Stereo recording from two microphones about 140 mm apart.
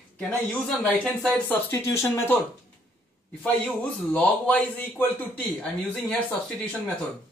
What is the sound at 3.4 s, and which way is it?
Speech, 10° left (ahead or behind).